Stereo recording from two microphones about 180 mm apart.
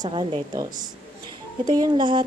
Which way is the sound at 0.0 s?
30° right (ahead or behind).